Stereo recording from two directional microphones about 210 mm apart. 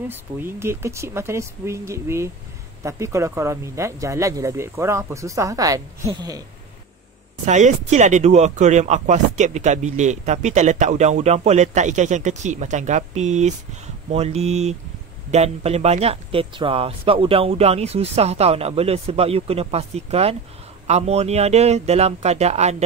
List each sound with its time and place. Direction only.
0.1 s speech: 10° right (ahead or behind)
7.4 s speech: 35° right (ahead or behind)